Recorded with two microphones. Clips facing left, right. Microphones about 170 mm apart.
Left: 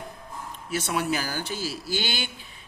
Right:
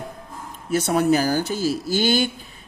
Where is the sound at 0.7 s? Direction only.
40° right (ahead or behind).